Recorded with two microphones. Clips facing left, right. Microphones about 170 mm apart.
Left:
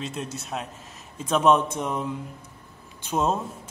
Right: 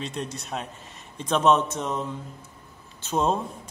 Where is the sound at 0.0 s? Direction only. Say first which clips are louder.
Even; 5° left (ahead or behind).